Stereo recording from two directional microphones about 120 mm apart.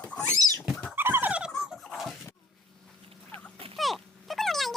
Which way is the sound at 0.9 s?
15° right (ahead or behind).